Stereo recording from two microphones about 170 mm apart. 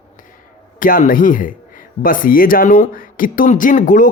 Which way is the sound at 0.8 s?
55° left (ahead or behind).